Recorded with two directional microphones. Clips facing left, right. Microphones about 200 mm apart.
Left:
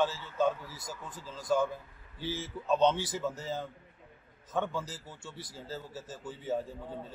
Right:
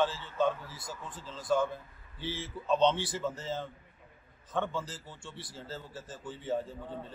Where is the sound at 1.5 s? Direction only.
5° left (ahead or behind).